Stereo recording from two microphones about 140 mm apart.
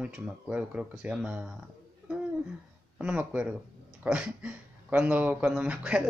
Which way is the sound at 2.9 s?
10° right (ahead or behind).